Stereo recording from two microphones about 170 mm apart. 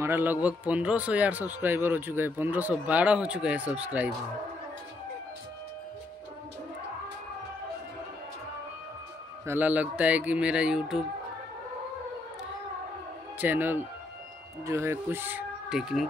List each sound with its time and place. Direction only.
0.0 s a man's voice: 10° right (ahead or behind)
9.5 s a man's voice: 10° right (ahead or behind)
13.4 s a man's voice: 10° right (ahead or behind)